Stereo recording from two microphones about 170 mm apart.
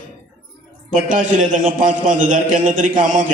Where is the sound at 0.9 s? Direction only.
50° right (ahead or behind).